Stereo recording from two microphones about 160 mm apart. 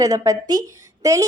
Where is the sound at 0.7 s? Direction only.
20° right (ahead or behind).